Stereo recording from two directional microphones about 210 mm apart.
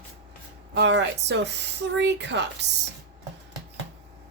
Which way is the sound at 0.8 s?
55° right (ahead or behind).